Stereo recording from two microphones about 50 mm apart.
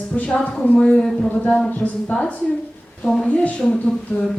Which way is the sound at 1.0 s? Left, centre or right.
Centre.